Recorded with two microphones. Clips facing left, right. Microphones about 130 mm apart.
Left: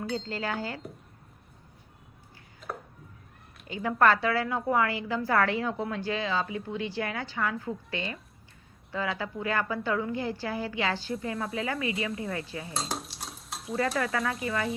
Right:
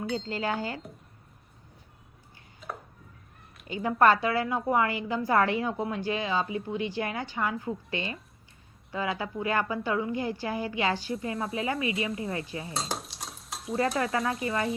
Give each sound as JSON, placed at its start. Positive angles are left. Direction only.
{"t": 0.3, "sound": "a woman's voice", "side_deg": -20}
{"t": 2.6, "sound": "a sound", "side_deg": 0}
{"t": 3.7, "sound": "a woman's voice", "side_deg": -20}
{"t": 12.6, "sound": "stir", "side_deg": 0}
{"t": 13.8, "sound": "speech", "side_deg": 0}